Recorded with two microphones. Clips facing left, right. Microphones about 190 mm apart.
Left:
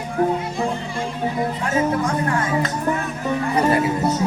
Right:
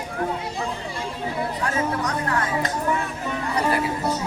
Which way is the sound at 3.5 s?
25° left (ahead or behind).